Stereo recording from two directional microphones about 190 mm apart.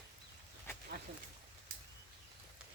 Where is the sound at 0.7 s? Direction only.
15° left (ahead or behind).